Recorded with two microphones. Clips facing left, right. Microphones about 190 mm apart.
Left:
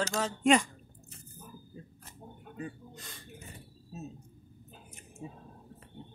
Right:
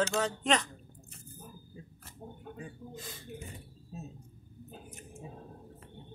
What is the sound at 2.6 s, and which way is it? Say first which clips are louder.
Speech: left 4 dB; centre (ahead or behind).